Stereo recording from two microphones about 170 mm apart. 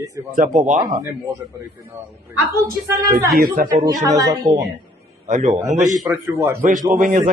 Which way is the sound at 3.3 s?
55° right (ahead or behind).